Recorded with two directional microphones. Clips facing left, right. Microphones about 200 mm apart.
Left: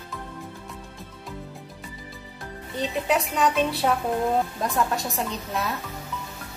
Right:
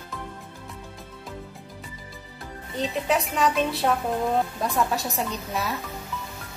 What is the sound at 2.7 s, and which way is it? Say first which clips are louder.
Speech: even; centre (ahead or behind).